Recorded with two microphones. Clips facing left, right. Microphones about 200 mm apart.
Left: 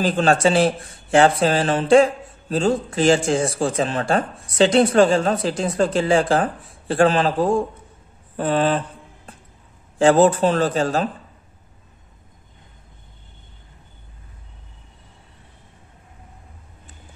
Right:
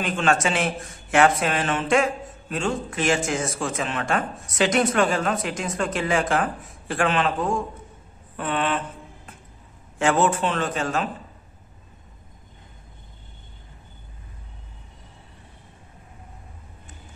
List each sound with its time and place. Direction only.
0.0 s speech: 35° left (ahead or behind)
8.4 s a sound: 35° left (ahead or behind)
9.9 s speech: 35° left (ahead or behind)